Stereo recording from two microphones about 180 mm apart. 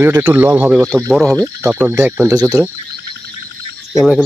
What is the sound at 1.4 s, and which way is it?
Speech, 15° right (ahead or behind).